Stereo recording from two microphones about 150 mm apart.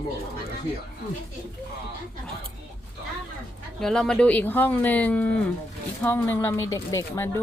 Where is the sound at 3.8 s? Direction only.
5° left (ahead or behind).